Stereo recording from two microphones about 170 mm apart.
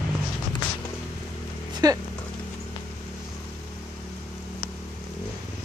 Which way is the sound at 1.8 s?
20° right (ahead or behind).